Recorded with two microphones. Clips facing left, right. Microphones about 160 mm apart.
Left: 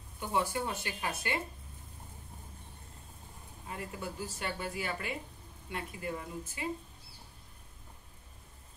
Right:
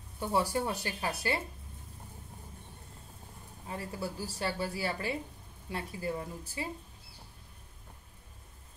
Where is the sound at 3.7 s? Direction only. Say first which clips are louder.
Right 3 dB; 35° right (ahead or behind).